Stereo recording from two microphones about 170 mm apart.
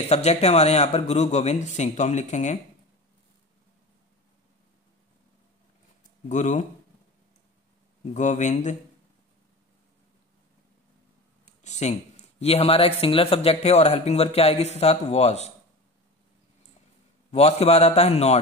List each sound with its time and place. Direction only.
0.1 s speech: 40° left (ahead or behind)
6.2 s speech: 45° left (ahead or behind)
8.0 s speech: 45° left (ahead or behind)
11.4 s speech: 45° left (ahead or behind)
17.3 s speech: 40° left (ahead or behind)